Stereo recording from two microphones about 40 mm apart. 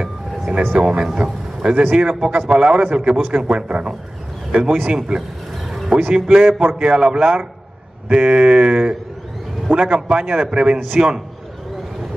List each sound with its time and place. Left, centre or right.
0.0 s vehicle: right
1.0 s speech: centre
4.5 s speech: right
4.8 s a man's voice: right
9.9 s a man's voice: centre
10.2 s speech: right